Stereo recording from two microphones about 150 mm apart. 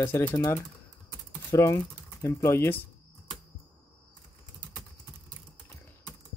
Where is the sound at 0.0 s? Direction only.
15° left (ahead or behind).